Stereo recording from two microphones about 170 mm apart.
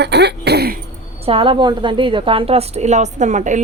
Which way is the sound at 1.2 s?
30° right (ahead or behind).